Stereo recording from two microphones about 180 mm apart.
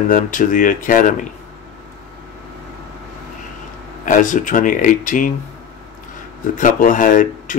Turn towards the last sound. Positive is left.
turn(degrees=50)  # may be behind; listen again after turning